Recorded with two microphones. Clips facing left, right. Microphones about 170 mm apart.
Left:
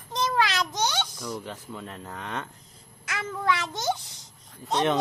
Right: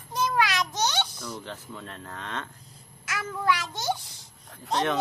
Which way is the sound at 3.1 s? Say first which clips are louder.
Even; 25° left (ahead or behind).